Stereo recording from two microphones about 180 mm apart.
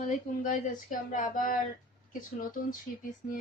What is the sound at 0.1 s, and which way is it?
Speech, 45° left (ahead or behind).